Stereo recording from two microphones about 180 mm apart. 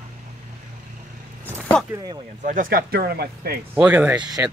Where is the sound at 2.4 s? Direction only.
45° right (ahead or behind).